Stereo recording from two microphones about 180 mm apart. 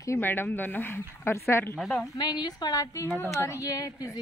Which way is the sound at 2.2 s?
25° left (ahead or behind).